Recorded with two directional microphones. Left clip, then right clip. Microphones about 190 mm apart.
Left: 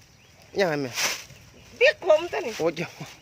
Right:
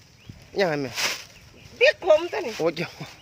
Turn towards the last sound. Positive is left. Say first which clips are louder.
# right 1 dB
turn(degrees=0)  # may be behind; listen again after turning